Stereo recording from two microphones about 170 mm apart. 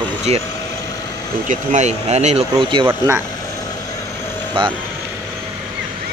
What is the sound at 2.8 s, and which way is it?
Speech, 15° right (ahead or behind).